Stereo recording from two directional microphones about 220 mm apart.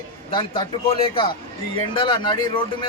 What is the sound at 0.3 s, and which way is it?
Speech, 25° left (ahead or behind).